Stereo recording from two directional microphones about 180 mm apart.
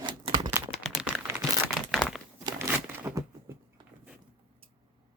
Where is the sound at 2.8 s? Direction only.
10° right (ahead or behind).